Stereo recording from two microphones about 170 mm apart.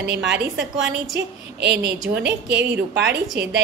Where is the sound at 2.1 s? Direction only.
90° right.